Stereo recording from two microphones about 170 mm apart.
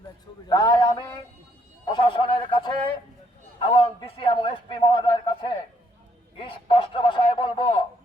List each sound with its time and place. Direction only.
0.4 s a man's voice: 25° left (ahead or behind)